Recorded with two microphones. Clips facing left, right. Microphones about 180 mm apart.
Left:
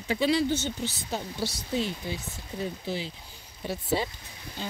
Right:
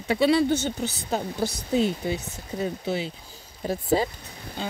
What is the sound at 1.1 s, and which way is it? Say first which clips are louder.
Speech: right 7 dB; 50° right (ahead or behind).